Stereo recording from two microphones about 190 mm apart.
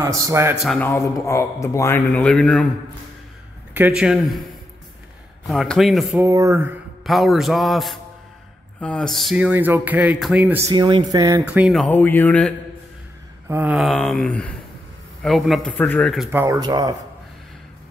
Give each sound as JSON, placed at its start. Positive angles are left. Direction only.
{"t": 0.0, "sound": "speech", "side_deg": -15}
{"t": 0.6, "sound": "speech", "side_deg": 5}
{"t": 3.7, "sound": "speech", "side_deg": -5}
{"t": 5.5, "sound": "speech", "side_deg": 0}
{"t": 6.2, "sound": "speech", "side_deg": -15}
{"t": 10.7, "sound": "speech", "side_deg": -25}
{"t": 13.5, "sound": "speech", "side_deg": -10}
{"t": 16.3, "sound": "speech", "side_deg": -15}